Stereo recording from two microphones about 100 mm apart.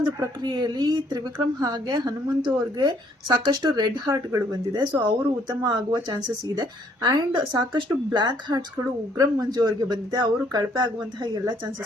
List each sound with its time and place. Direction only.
0.2 s speech: 40° right (ahead or behind)